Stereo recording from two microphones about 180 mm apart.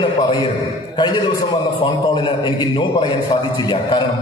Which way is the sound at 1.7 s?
25° left (ahead or behind).